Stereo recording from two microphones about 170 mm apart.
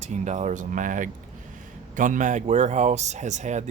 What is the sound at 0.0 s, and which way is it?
Speech, 45° right (ahead or behind).